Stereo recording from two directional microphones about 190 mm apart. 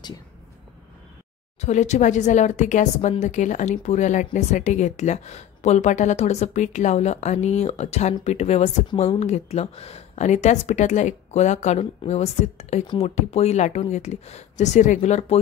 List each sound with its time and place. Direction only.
1.6 s speech: 35° left (ahead or behind)